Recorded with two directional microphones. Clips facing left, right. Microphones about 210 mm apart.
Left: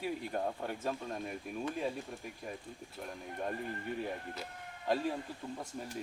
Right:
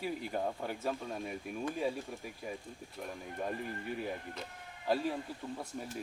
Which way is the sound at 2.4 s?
5° right (ahead or behind).